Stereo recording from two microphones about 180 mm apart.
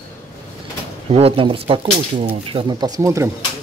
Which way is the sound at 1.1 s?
30° right (ahead or behind).